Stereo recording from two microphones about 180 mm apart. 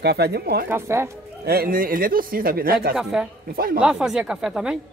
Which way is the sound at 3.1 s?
5° right (ahead or behind).